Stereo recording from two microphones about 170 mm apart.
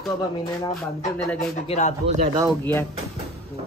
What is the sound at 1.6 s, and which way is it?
Speech, 40° left (ahead or behind).